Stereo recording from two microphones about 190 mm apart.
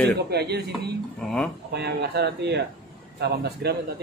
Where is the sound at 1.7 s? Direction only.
60° right (ahead or behind).